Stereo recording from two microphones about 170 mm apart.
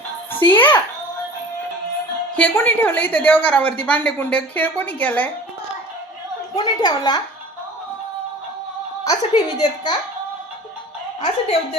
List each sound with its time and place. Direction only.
0.3 s a child's voice: 10° left (ahead or behind)
2.3 s a woman's voice: 10° left (ahead or behind)
6.8 s a woman's voice: 25° left (ahead or behind)
9.0 s a woman's voice: 25° left (ahead or behind)
11.2 s a woman's voice: 35° left (ahead or behind)